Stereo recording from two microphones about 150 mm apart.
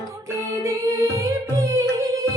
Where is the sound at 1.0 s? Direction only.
20° right (ahead or behind).